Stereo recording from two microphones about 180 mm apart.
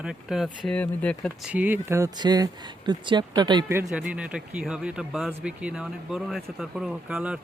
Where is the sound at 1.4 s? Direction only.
10° right (ahead or behind); by 3.6 s 25° right (ahead or behind).